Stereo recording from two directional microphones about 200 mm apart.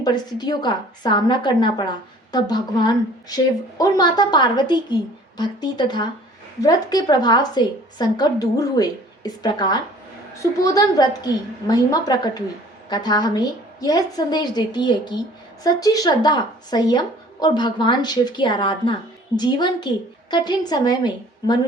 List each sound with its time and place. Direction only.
0.0 s a woman's voice: 20° left (ahead or behind)